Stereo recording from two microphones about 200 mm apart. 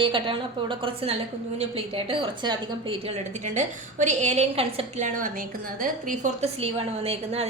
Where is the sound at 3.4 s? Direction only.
35° right (ahead or behind).